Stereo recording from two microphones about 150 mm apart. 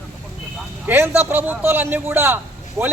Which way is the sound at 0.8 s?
15° right (ahead or behind).